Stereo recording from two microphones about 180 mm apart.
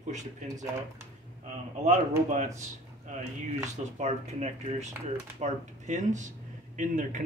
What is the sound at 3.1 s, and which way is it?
A man's voice, 40° right (ahead or behind).